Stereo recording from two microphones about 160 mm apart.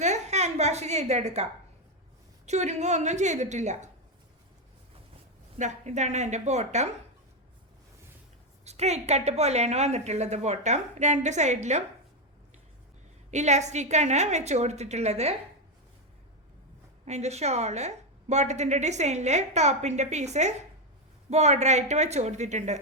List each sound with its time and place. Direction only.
0.0 s a sound: 45° right (ahead or behind)
2.5 s a woman's voice: 45° right (ahead or behind)
5.5 s a woman's voice: 45° right (ahead or behind)
8.6 s a woman's voice: 45° right (ahead or behind)
13.3 s a woman's voice: 45° right (ahead or behind)
17.1 s a woman's voice: 45° right (ahead or behind)